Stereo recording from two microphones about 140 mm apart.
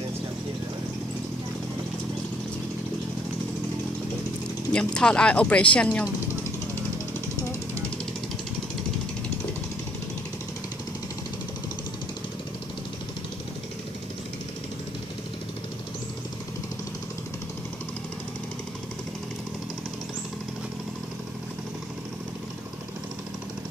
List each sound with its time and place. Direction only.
4.7 s speech: 5° left (ahead or behind)